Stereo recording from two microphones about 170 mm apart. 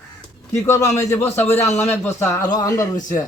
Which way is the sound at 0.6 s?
20° left (ahead or behind).